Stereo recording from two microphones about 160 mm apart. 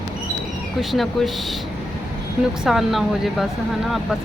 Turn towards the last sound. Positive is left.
turn(degrees=0)  # may be behind; listen again after turning